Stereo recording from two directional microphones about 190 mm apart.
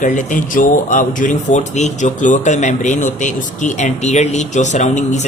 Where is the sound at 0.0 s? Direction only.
45° left (ahead or behind).